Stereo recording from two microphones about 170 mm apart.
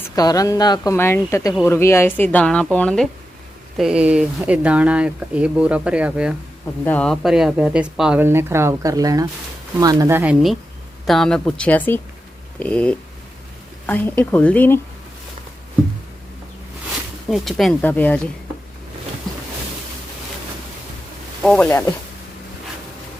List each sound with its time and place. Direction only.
0.0 s a woman's voice: 20° left (ahead or behind); by 6.3 s 5° right (ahead or behind)
6.8 s speech: 5° left (ahead or behind); by 10.3 s 15° right (ahead or behind)
11.0 s speech: centre (ahead or behind)
17.2 s speech: centre (ahead or behind)
21.4 s speech: 5° left (ahead or behind)